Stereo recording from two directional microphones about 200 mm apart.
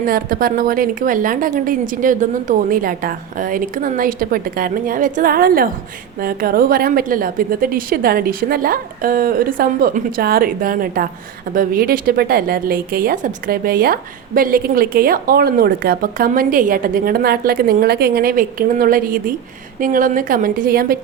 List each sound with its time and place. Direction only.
0.0 s a woman's voice: 45° right (ahead or behind)